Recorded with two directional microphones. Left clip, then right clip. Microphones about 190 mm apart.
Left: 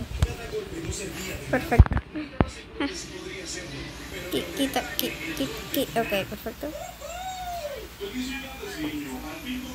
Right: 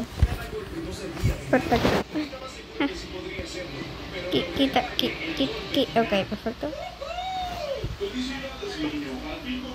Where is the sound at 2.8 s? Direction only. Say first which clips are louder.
Right 3 dB; 10° right (ahead or behind).